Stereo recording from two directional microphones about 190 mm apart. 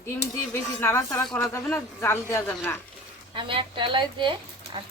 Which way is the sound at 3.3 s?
25° right (ahead or behind).